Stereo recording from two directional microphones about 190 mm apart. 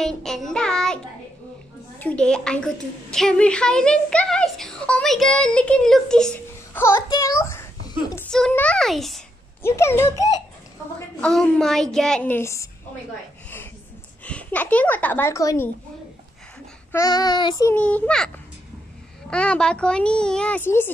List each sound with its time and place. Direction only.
0.0 s child singing: centre (ahead or behind)
2.0 s a woman's voice: 5° left (ahead or behind)
6.8 s speech: 15° left (ahead or behind)
7.9 s a sound: 15° left (ahead or behind)
8.3 s a woman's voice: 5° left (ahead or behind)
9.6 s speech: 15° left (ahead or behind)
11.1 s a woman's voice: 5° left (ahead or behind)
14.2 s speech: 10° left (ahead or behind)
16.9 s child singing: 20° left (ahead or behind)
17.7 s speech: 5° left (ahead or behind)
19.3 s a woman's voice: 5° left (ahead or behind)